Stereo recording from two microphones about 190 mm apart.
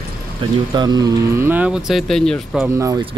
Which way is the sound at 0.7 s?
20° right (ahead or behind).